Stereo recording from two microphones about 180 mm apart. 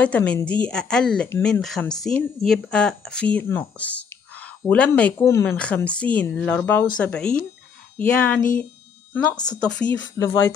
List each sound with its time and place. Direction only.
0.0 s speech: 10° left (ahead or behind)
9.5 s speech: 5° left (ahead or behind)
9.9 s speech: 15° left (ahead or behind)